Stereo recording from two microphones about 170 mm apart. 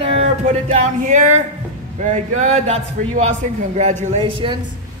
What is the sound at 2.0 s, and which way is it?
A man's voice, 45° right (ahead or behind).